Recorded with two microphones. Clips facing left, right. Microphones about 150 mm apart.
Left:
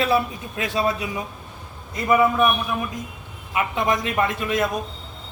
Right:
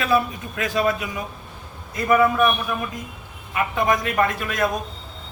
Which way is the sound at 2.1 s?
20° left (ahead or behind).